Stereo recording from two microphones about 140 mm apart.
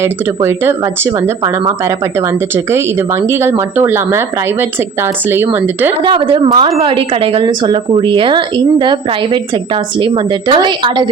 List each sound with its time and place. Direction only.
0.0 s speech: 15° right (ahead or behind)
3.2 s speech: 15° right (ahead or behind)
5.3 s speech: 15° right (ahead or behind)
6.0 s a woman's voice: 35° right (ahead or behind)
10.5 s a woman's voice: 35° right (ahead or behind)